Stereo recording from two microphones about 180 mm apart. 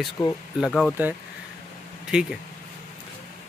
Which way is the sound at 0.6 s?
Centre (ahead or behind).